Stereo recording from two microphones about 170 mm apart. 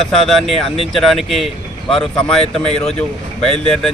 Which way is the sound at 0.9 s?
Centre (ahead or behind).